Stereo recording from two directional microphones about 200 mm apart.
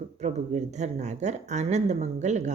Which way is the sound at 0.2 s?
35° right (ahead or behind).